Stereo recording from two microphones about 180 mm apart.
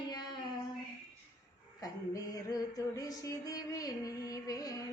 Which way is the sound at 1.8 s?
20° left (ahead or behind).